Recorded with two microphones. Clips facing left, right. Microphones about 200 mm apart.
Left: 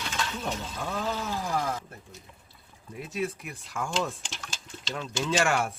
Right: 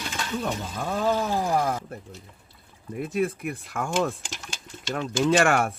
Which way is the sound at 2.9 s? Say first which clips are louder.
Right 6 dB; 55° right (ahead or behind).